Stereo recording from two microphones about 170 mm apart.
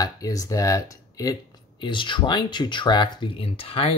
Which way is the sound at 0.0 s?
20° left (ahead or behind).